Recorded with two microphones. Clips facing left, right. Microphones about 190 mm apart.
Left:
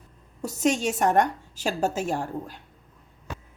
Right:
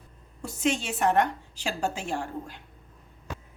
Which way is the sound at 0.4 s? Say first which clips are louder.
Left 4 dB; 40° left (ahead or behind).